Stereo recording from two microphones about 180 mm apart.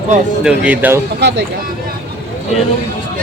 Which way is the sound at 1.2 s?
70° right (ahead or behind).